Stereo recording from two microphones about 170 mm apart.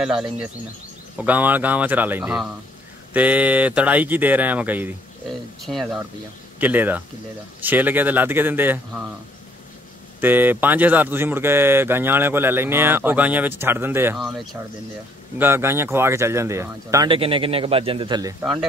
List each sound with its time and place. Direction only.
0.0 s speech: 5° right (ahead or behind)
5.6 s speech: centre (ahead or behind)
10.2 s speech: 10° right (ahead or behind)
14.1 s speech: centre (ahead or behind)
15.3 s speech: 15° right (ahead or behind)
17.1 s a man's voice: 30° right (ahead or behind)
18.4 s speech: 5° right (ahead or behind)